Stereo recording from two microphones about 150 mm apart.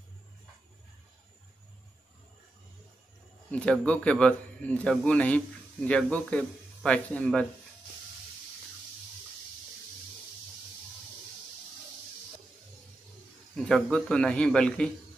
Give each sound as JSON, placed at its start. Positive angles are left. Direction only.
{"t": 3.5, "sound": "a man's voice", "side_deg": 5}
{"t": 13.7, "sound": "a man's voice", "side_deg": 5}